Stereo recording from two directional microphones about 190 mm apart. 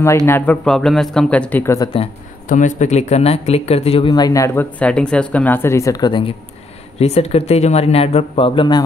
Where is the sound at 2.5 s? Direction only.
40° left (ahead or behind).